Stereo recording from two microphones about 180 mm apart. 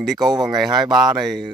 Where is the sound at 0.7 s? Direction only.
25° right (ahead or behind).